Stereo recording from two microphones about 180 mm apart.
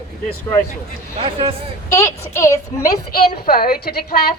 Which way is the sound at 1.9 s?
15° left (ahead or behind).